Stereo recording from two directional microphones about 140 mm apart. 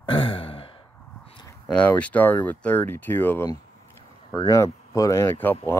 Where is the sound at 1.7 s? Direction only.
10° left (ahead or behind).